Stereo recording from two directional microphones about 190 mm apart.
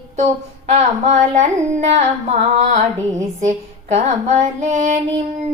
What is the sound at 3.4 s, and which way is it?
Female singing, 35° right (ahead or behind).